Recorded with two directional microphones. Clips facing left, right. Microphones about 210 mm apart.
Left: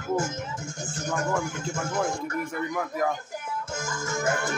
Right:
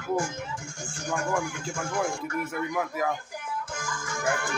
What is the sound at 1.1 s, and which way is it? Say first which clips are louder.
Speech: even; 20° left (ahead or behind).